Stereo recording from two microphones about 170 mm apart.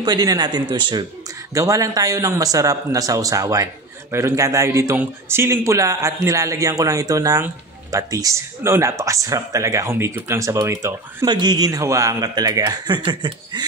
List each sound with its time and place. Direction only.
0.0 s a man's voice: 25° right (ahead or behind)